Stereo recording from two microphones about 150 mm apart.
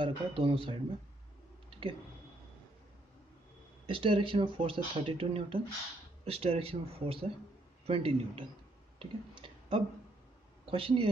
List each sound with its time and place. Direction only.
0.0 s speech: 35° right (ahead or behind)
3.8 s speech: 40° right (ahead or behind)
9.0 s a sound: 35° right (ahead or behind)
10.6 s speech: 35° right (ahead or behind)